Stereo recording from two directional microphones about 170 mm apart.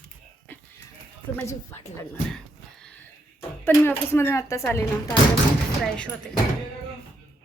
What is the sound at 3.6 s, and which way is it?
A woman's voice, 15° left (ahead or behind).